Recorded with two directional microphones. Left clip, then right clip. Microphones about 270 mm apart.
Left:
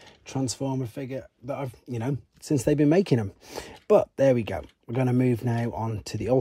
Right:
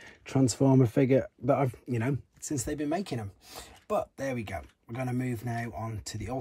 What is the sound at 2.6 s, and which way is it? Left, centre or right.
Speech, left.